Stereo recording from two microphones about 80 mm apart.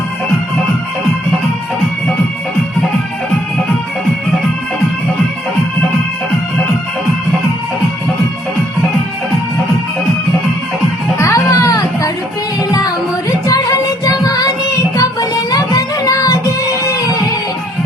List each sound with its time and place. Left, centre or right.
11.2 s music: left
13.5 s music: left